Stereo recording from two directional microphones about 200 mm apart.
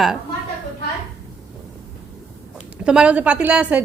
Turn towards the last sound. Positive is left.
turn(degrees=-5)  # may be behind; listen again after turning